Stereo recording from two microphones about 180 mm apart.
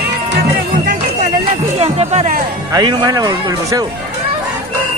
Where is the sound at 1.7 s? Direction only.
35° right (ahead or behind).